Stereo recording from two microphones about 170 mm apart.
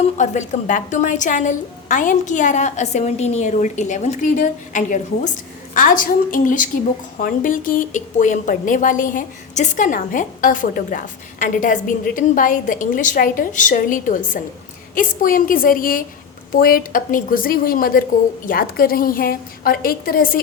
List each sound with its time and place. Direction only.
0.2 s a woman's voice: 45° left (ahead or behind)